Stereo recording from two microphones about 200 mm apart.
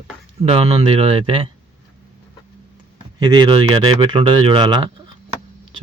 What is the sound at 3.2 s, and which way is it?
Speech, 20° right (ahead or behind).